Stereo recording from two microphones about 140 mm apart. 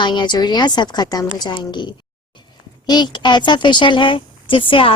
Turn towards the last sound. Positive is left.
turn(degrees=40)  # may be behind; listen again after turning